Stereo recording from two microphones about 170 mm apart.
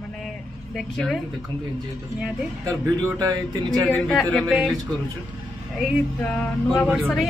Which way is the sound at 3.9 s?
Centre (ahead or behind).